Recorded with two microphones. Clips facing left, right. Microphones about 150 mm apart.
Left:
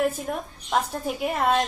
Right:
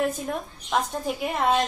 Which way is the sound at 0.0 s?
5° left (ahead or behind).